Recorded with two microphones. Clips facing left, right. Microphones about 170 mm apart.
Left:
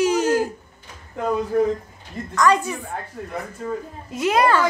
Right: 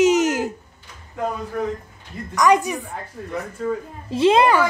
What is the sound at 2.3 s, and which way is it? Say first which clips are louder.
Speech: right 2 dB; 15° right (ahead or behind).